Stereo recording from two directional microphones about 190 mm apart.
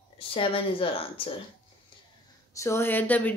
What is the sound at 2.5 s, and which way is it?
Speech, 15° left (ahead or behind).